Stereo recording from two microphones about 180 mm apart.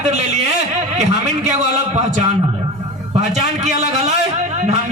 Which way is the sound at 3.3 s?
40° right (ahead or behind).